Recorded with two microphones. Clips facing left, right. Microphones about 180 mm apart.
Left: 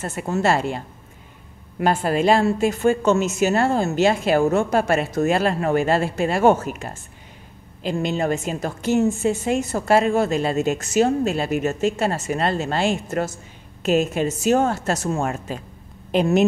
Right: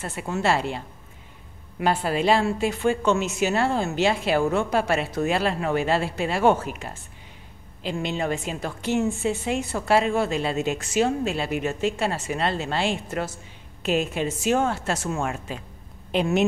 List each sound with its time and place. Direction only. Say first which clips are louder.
0.0 s a woman's voice: left 4 dB; 45° left (ahead or behind)